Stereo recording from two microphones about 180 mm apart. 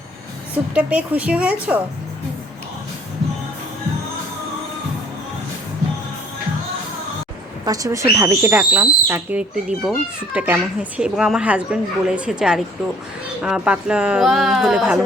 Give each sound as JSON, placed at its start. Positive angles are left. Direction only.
{"t": 0.5, "sound": "speech", "side_deg": -10}
{"t": 7.6, "sound": "a woman's voice", "side_deg": -20}